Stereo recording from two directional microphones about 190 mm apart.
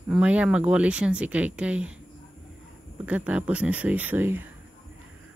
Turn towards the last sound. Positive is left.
turn(degrees=-10)  # may be behind; listen again after turning